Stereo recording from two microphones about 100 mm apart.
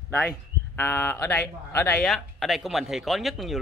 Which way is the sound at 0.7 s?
25° left (ahead or behind).